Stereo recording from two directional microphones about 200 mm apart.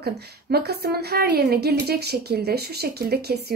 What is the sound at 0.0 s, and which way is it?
Speech, 50° right (ahead or behind).